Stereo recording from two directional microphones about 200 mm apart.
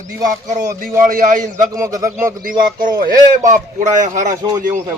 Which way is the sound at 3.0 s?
40° right (ahead or behind).